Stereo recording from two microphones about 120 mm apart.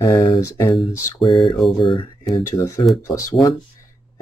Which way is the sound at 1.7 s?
45° left (ahead or behind).